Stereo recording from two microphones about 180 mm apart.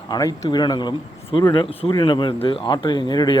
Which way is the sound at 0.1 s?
20° left (ahead or behind).